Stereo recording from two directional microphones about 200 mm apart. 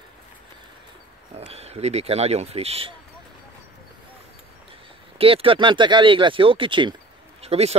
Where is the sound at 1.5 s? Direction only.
30° right (ahead or behind).